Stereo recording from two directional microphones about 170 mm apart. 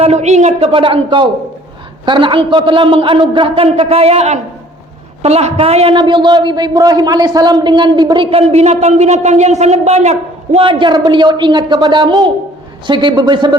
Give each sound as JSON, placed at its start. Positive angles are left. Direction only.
{"t": 0.0, "sound": "a man's voice", "side_deg": -40}
{"t": 0.7, "sound": "a man's voice", "side_deg": -30}